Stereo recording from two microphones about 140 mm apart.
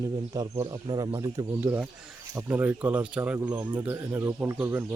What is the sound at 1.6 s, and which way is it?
Speech, 15° right (ahead or behind).